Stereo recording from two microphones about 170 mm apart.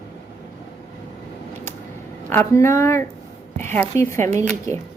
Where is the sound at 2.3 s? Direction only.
15° left (ahead or behind).